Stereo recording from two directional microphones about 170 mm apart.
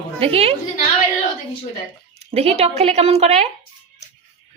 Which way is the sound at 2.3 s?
35° right (ahead or behind).